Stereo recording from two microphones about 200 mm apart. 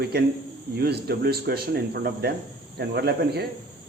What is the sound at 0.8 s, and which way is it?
Speech, 55° right (ahead or behind).